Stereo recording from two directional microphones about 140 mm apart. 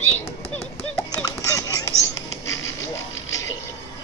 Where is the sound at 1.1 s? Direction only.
25° left (ahead or behind).